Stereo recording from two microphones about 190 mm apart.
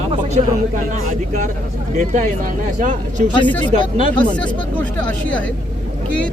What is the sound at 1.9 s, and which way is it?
Speech, 40° right (ahead or behind).